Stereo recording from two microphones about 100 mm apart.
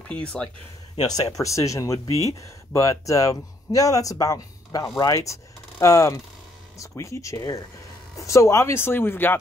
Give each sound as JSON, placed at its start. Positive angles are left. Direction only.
{"t": 0.1, "sound": "speech", "side_deg": 10}
{"t": 1.0, "sound": "speech", "side_deg": 40}